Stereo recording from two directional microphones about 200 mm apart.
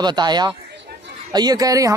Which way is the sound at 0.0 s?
20° right (ahead or behind).